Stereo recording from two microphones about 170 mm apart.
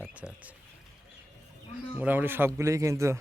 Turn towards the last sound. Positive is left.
turn(degrees=-15)  # may be behind; listen again after turning